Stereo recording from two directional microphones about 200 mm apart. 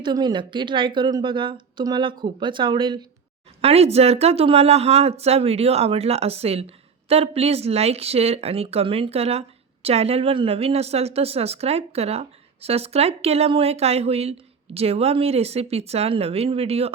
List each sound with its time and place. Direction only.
0.0 s a woman's voice: 20° right (ahead or behind)